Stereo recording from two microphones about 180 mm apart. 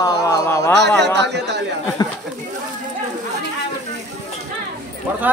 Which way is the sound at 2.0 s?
20° left (ahead or behind).